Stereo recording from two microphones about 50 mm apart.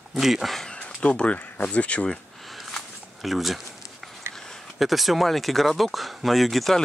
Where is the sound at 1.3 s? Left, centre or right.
Left.